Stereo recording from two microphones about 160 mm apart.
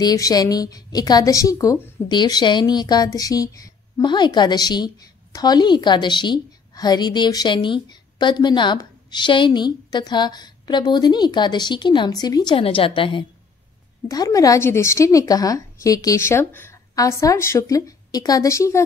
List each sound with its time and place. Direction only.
0.0 s a woman's voice: 25° left (ahead or behind)